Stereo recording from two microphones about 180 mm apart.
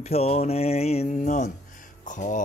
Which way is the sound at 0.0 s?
35° left (ahead or behind).